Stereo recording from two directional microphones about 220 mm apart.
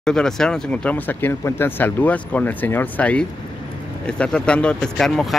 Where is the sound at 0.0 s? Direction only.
5° left (ahead or behind).